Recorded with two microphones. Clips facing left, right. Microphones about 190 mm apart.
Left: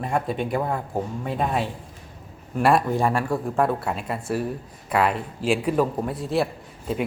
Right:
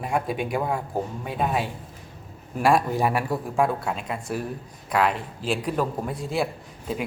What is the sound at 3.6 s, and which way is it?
A man's voice, 5° left (ahead or behind).